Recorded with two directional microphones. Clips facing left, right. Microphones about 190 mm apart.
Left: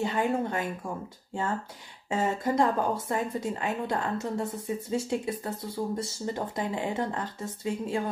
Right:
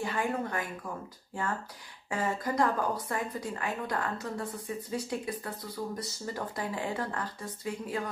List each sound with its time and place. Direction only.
0.0 s a woman's voice: 25° left (ahead or behind)
2.0 s a woman's voice: 25° left (ahead or behind)